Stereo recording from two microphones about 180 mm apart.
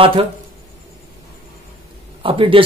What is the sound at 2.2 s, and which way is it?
Speech, 30° right (ahead or behind).